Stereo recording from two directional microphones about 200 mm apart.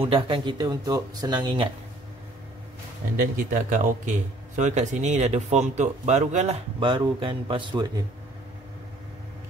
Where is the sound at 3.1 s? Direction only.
40° right (ahead or behind).